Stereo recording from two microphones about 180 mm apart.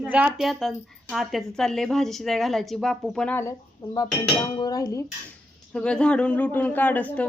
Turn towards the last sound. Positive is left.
turn(degrees=10)  # may be behind; listen again after turning